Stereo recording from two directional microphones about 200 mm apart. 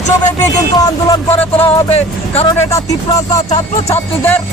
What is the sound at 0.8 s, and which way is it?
Speech, 20° left (ahead or behind).